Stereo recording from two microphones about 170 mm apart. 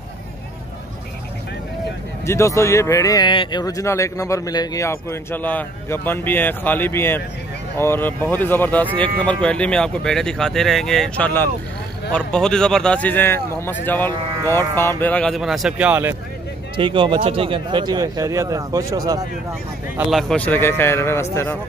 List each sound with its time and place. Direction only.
2.2 s speech: 15° left (ahead or behind); by 15.9 s centre (ahead or behind)
15.9 s speech: 10° right (ahead or behind)
16.7 s speech: 30° right (ahead or behind)
20.1 s speech: centre (ahead or behind)